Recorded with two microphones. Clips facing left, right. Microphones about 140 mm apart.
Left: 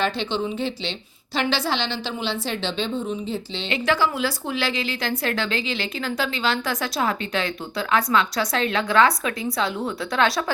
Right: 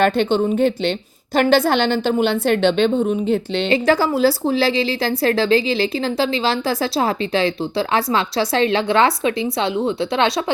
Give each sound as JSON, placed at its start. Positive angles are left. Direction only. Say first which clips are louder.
{"t": 0.0, "sound": "a woman's voice", "louder": "right 8 dB", "side_deg": -50}
{"t": 3.7, "sound": "a woman's voice", "louder": "right 5 dB", "side_deg": -40}